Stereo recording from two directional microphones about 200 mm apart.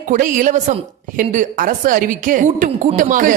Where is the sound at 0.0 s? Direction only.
40° right (ahead or behind).